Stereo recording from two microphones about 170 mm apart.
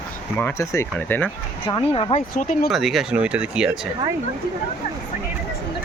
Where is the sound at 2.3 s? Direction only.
50° left (ahead or behind).